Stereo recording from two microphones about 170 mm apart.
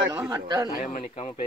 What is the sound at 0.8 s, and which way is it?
Speech, 45° left (ahead or behind).